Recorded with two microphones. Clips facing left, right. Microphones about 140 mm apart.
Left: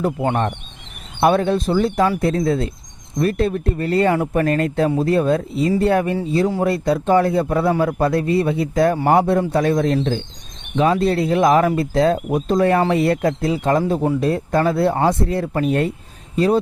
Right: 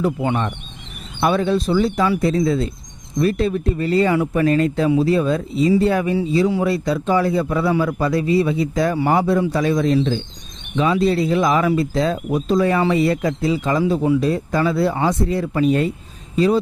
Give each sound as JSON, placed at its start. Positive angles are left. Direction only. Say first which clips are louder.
{"t": 0.0, "sound": "a man's voice", "louder": "left 1 dB", "side_deg": 45}
{"t": 14.2, "sound": "speech", "louder": "left 1 dB", "side_deg": 55}